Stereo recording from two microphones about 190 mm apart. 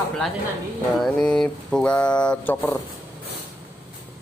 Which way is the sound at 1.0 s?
5° left (ahead or behind).